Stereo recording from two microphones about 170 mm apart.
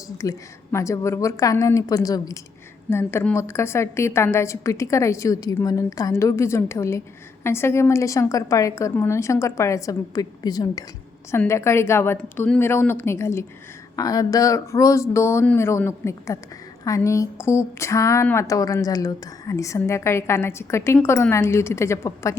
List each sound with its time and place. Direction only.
0.2 s a woman's voice: 20° left (ahead or behind)